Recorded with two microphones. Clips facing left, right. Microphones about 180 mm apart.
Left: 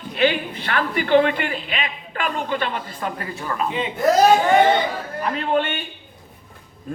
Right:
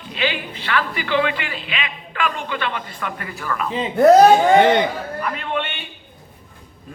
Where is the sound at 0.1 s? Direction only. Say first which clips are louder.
Left 5 dB; 55° left (ahead or behind); by 3.7 s 25° left (ahead or behind).